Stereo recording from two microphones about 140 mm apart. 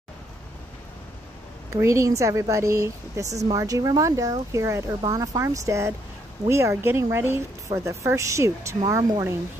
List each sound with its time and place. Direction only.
1.7 s a woman's voice: 20° right (ahead or behind)